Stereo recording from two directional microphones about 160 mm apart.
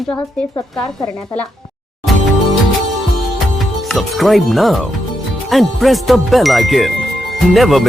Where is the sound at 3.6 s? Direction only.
Centre (ahead or behind).